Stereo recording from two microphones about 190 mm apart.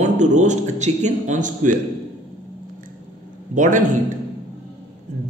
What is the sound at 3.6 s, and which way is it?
Speech, 40° right (ahead or behind).